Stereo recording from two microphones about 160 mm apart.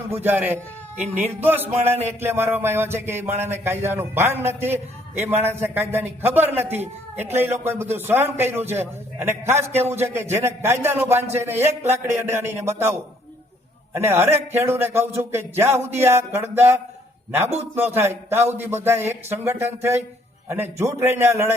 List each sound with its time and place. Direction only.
0.1 s a man's voice: 10° right (ahead or behind)